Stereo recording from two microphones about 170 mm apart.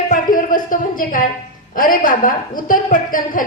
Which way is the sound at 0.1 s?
55° left (ahead or behind).